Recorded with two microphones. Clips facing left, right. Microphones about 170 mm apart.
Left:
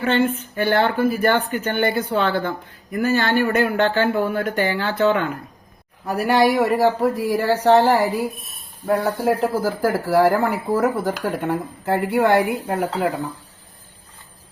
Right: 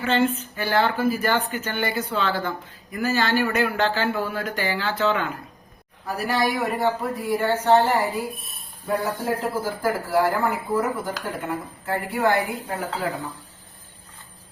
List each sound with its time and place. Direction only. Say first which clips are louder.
0.0 s speech: left 2 dB; 55° left (ahead or behind)
6.2 s speech: left 7 dB; 80° left
7.6 s speech: left 5 dB; 80° left